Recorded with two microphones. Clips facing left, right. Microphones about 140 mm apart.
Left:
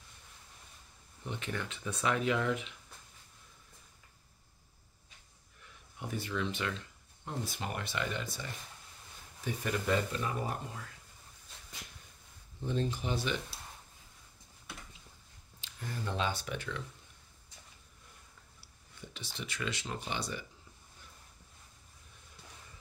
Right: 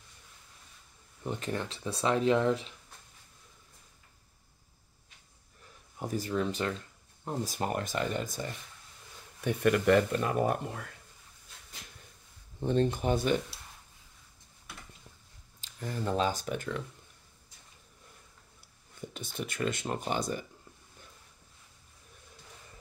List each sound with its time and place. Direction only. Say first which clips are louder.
1.2 s speech: right 5 dB; 40° right (ahead or behind)
5.9 s speech: right 5 dB; 40° right (ahead or behind)
9.4 s speech: right 9 dB; 65° right (ahead or behind)
12.5 s speech: right 7 dB; 60° right (ahead or behind)
15.6 s speech: right 6 dB; 45° right (ahead or behind)
18.6 s speech: right 8 dB; 50° right (ahead or behind)